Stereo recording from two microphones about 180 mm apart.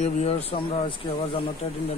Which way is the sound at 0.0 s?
35° left (ahead or behind).